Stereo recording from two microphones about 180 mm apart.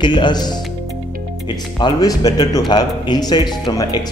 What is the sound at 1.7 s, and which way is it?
A man's voice, 25° left (ahead or behind).